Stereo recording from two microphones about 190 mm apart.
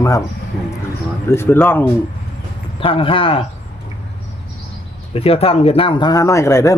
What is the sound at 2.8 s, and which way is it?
Speech, 30° left (ahead or behind).